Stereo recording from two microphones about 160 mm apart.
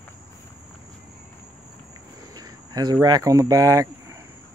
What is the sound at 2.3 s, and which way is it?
Speech, 25° right (ahead or behind).